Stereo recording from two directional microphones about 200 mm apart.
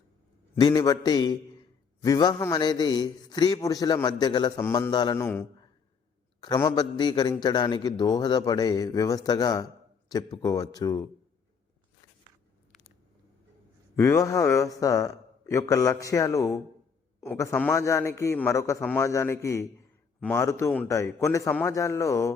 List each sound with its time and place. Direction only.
0.6 s a man's voice: 20° left (ahead or behind)
5.2 s a man's voice: 10° left (ahead or behind)
6.4 s a man's voice: 20° left (ahead or behind)
13.9 s a man's voice: 10° left (ahead or behind)